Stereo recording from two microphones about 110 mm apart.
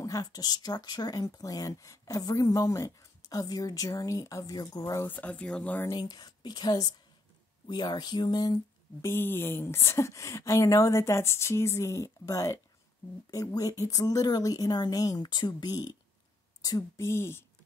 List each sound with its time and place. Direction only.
0.0 s speech: 35° left (ahead or behind)
5.0 s speech: 15° left (ahead or behind)
5.9 s speech: 35° left (ahead or behind)
9.0 s speech: 20° left (ahead or behind)